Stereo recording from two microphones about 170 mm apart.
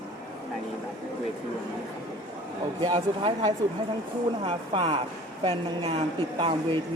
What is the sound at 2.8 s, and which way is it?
A woman's voice, 25° right (ahead or behind).